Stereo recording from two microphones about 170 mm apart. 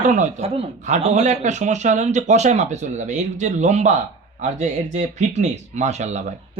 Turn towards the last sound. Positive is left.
turn(degrees=-40)  # may be behind; listen again after turning